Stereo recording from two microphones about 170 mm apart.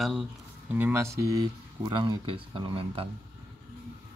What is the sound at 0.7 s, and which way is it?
Speech, 15° right (ahead or behind).